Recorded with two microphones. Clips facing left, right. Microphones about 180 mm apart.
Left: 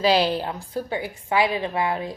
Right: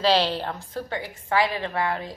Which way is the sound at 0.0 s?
10° left (ahead or behind).